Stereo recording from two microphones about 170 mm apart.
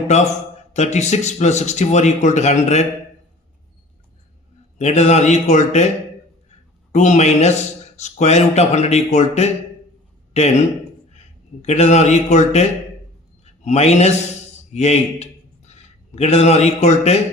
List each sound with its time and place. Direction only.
0.7 s speech: 40° left (ahead or behind)
4.8 s a man's voice: 40° left (ahead or behind)
14.7 s a sound: 40° left (ahead or behind)